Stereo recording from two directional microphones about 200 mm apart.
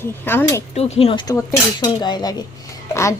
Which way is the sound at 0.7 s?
30° left (ahead or behind).